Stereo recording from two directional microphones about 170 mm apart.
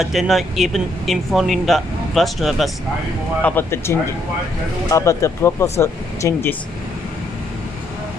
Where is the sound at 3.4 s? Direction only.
15° left (ahead or behind).